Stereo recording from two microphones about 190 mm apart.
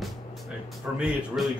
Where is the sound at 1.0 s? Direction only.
Centre (ahead or behind).